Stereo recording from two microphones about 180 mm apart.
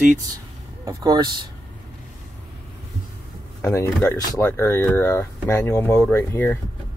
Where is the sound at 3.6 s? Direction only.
10° left (ahead or behind).